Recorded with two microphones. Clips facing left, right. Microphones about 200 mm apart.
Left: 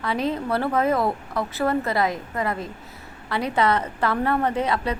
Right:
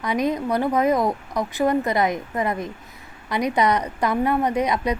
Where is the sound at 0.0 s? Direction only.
15° right (ahead or behind).